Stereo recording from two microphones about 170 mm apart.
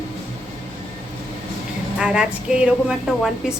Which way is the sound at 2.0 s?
5° right (ahead or behind).